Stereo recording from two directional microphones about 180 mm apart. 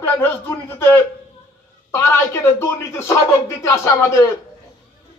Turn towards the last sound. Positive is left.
turn(degrees=15)  # may be behind; listen again after turning